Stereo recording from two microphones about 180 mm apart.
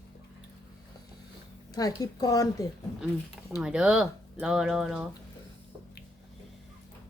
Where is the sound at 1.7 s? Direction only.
20° left (ahead or behind).